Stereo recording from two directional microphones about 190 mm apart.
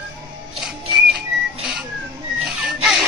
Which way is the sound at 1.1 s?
5° right (ahead or behind).